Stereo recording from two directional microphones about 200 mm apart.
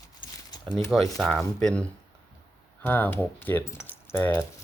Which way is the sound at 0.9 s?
Centre (ahead or behind).